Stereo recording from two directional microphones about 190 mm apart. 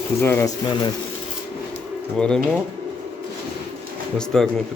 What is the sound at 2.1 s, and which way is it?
Speech, 5° left (ahead or behind).